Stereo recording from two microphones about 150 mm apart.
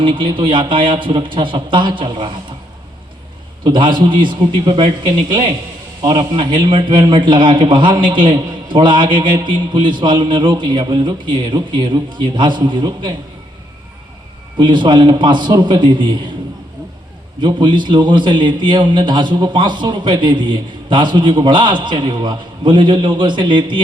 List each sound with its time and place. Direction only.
0.0 s a man's voice: 35° right (ahead or behind)
3.6 s a man's voice: 35° right (ahead or behind)
14.6 s a man's voice: 30° right (ahead or behind)
17.4 s a man's voice: 30° right (ahead or behind)